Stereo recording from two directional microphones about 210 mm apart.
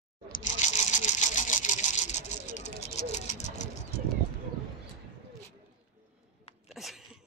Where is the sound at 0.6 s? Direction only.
35° left (ahead or behind).